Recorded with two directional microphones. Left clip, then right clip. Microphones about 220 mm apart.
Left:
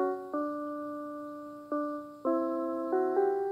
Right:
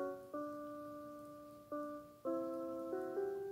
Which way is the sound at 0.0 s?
35° left (ahead or behind).